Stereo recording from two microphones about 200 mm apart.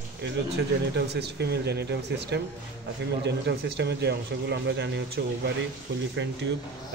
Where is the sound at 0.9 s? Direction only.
55° right (ahead or behind).